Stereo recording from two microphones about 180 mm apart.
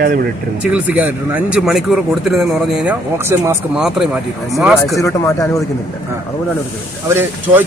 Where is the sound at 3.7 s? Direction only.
5° right (ahead or behind).